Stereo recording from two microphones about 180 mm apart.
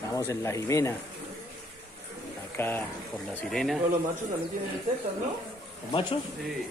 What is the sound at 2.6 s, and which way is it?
Speech, 10° left (ahead or behind).